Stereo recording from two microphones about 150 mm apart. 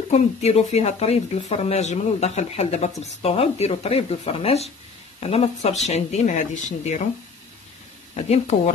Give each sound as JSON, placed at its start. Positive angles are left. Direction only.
{"t": 0.1, "sound": "speech", "side_deg": 45}
{"t": 8.3, "sound": "speech", "side_deg": 50}